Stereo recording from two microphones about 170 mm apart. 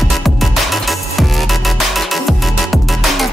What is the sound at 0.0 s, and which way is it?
Music, centre (ahead or behind).